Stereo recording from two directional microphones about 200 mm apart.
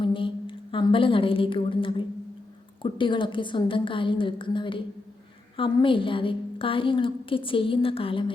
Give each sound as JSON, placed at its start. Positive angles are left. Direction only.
{"t": 0.0, "sound": "a woman's voice", "side_deg": 25}